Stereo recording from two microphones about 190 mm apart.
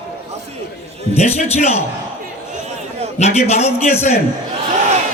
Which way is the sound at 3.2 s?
35° left (ahead or behind).